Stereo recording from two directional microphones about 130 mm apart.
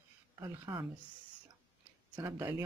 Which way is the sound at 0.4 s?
35° right (ahead or behind).